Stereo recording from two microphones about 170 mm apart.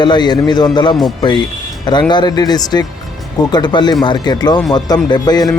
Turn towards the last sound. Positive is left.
turn(degrees=25)  # may be behind; listen again after turning